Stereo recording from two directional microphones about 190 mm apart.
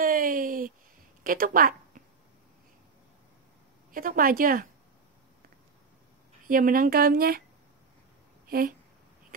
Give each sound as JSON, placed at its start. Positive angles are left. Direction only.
{"t": 0.0, "sound": "a sound", "side_deg": -45}
{"t": 1.2, "sound": "speech", "side_deg": -45}
{"t": 3.9, "sound": "speech", "side_deg": -45}
{"t": 6.4, "sound": "speech", "side_deg": -45}
{"t": 8.5, "sound": "speech", "side_deg": -50}